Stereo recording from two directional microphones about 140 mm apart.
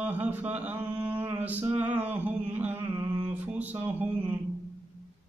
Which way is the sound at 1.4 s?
10° right (ahead or behind).